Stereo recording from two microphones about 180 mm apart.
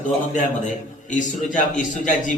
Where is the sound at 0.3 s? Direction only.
45° left (ahead or behind).